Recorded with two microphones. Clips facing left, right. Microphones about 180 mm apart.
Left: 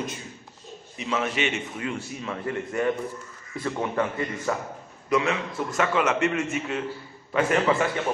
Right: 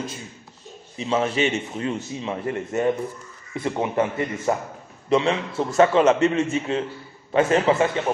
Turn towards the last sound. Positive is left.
turn(degrees=-25)  # may be behind; listen again after turning